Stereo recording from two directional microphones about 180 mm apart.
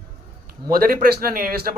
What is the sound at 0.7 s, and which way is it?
Speech, 55° right (ahead or behind).